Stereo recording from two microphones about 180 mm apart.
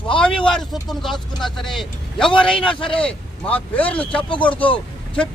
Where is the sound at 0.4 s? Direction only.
Centre (ahead or behind).